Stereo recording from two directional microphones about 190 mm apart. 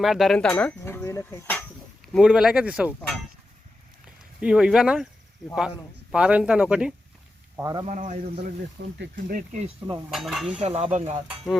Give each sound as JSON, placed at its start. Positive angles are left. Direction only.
{"t": 0.0, "sound": "speech", "side_deg": 0}
{"t": 2.1, "sound": "speech", "side_deg": -5}
{"t": 4.4, "sound": "speech", "side_deg": -5}
{"t": 7.5, "sound": "speech", "side_deg": -20}
{"t": 7.9, "sound": "a man's voice", "side_deg": -40}
{"t": 8.8, "sound": "speech", "side_deg": -60}
{"t": 9.1, "sound": "speech", "side_deg": -50}
{"t": 9.6, "sound": "stir", "side_deg": -25}
{"t": 10.1, "sound": "speech", "side_deg": 0}
{"t": 10.6, "sound": "a man's voice", "side_deg": -35}